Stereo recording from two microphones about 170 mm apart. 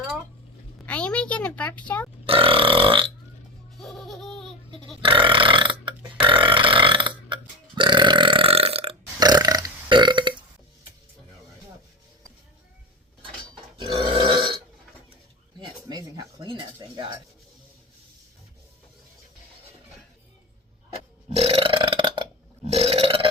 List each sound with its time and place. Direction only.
0.9 s a sound: 5° left (ahead or behind)
2.2 s burping: 30° right (ahead or behind)
3.8 s laughter: centre (ahead or behind)
5.0 s burping: 30° right (ahead or behind)
13.7 s burping: 30° right (ahead or behind)
15.9 s a sound: 20° right (ahead or behind)
21.3 s burping: 35° right (ahead or behind)